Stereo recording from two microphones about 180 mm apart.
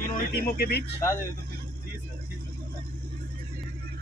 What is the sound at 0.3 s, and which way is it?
Speech, 60° left (ahead or behind).